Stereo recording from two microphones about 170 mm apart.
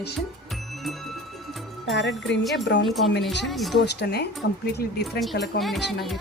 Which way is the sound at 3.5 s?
Centre (ahead or behind).